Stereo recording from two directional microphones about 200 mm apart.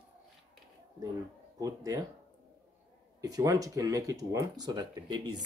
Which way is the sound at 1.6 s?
15° right (ahead or behind).